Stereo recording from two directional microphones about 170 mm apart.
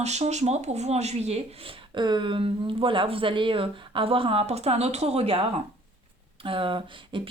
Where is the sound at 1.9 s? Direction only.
25° right (ahead or behind).